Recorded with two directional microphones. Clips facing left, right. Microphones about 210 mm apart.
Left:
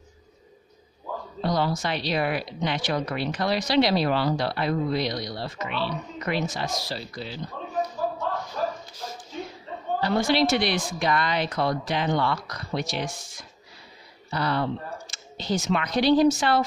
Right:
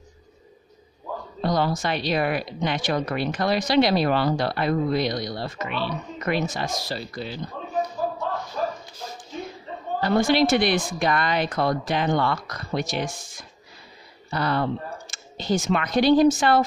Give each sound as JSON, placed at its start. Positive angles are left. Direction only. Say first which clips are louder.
{"t": 1.4, "sound": "a woman's voice", "louder": "right 2 dB", "side_deg": -50}
{"t": 9.9, "sound": "a woman's voice", "louder": "right 3 dB", "side_deg": -50}